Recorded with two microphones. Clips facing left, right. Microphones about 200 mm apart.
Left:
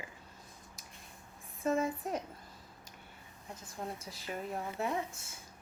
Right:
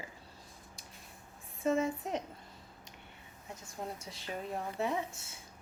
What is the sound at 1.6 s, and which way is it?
Speech, 25° right (ahead or behind).